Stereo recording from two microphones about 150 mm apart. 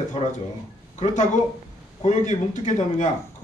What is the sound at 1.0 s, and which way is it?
Speech, 55° left (ahead or behind).